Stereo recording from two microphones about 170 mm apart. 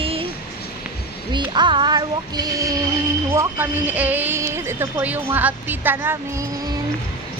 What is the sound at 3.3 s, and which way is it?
Speech, 15° right (ahead or behind).